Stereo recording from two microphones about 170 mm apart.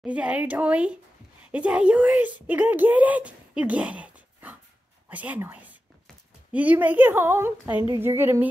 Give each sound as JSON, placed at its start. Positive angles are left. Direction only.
{"t": 0.0, "sound": "a woman's voice", "side_deg": -10}